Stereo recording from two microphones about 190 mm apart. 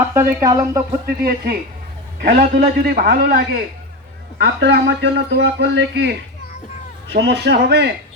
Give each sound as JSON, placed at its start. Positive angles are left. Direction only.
{"t": 0.1, "sound": "speech", "side_deg": -15}
{"t": 1.0, "sound": "a man's voice", "side_deg": -50}
{"t": 2.3, "sound": "a man's voice", "side_deg": -40}
{"t": 2.6, "sound": "a man's voice", "side_deg": -50}